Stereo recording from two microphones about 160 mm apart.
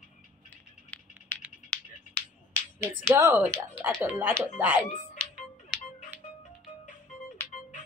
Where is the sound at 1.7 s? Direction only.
5° left (ahead or behind).